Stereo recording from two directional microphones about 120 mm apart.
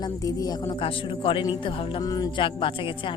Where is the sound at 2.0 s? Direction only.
30° left (ahead or behind).